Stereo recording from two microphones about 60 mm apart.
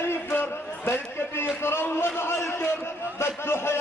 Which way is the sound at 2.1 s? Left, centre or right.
Left.